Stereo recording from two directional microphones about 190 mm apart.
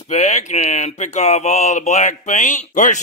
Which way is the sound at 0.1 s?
40° left (ahead or behind).